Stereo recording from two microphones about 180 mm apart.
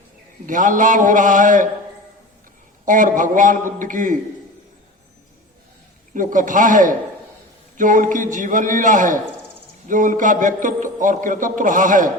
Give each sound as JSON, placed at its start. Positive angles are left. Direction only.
{"t": 0.4, "sound": "a man's voice", "side_deg": -45}
{"t": 2.8, "sound": "a man's voice", "side_deg": -45}
{"t": 6.1, "sound": "a man's voice", "side_deg": -45}